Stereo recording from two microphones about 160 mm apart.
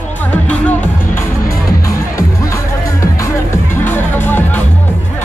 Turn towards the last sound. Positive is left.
turn(degrees=10)  # may be behind; listen again after turning